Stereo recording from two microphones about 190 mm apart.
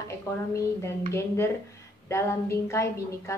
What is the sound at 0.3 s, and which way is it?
A woman's voice, 15° left (ahead or behind).